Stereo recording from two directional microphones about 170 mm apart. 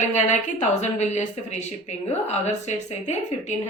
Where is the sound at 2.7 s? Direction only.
40° left (ahead or behind).